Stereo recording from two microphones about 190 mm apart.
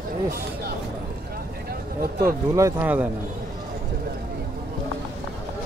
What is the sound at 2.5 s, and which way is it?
Speech, 10° right (ahead or behind).